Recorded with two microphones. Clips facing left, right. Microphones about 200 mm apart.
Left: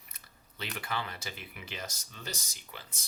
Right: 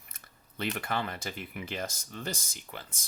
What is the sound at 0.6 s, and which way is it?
Speech, 50° right (ahead or behind).